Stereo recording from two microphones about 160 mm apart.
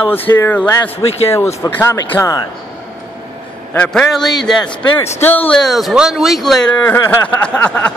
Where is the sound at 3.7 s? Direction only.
5° left (ahead or behind).